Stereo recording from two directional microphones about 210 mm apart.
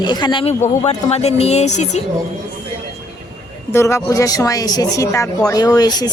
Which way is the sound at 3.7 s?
15° left (ahead or behind).